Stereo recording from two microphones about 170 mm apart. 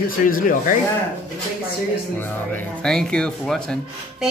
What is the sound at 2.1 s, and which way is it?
Speech, 5° left (ahead or behind).